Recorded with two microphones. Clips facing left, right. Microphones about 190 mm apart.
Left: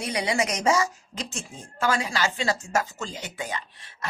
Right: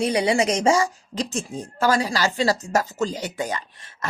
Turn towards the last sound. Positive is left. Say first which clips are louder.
# right 6 dB
turn(degrees=-40)  # may be behind; listen again after turning